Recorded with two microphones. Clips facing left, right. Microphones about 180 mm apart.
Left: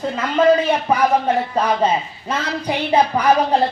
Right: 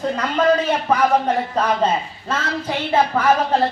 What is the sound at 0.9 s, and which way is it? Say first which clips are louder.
A man's voice: even; 10° left (ahead or behind).